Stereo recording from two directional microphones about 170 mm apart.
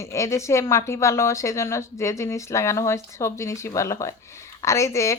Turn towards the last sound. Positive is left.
turn(degrees=15)  # may be behind; listen again after turning